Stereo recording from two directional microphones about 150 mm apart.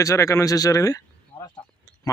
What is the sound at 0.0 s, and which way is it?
Speech, 20° left (ahead or behind).